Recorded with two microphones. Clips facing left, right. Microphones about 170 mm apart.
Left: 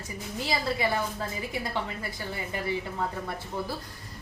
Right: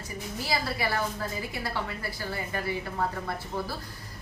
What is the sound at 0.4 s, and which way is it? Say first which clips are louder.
Speech: left 2 dB; 20° left (ahead or behind).